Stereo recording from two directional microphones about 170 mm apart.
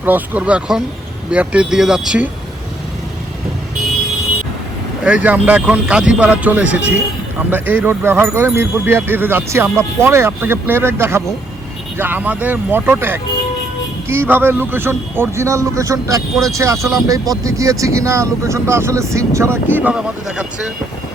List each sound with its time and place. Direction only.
0.0 s speech: 10° right (ahead or behind)
5.0 s speech: 10° right (ahead or behind)